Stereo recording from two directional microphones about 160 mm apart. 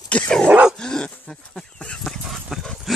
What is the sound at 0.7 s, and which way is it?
Dog, 5° left (ahead or behind).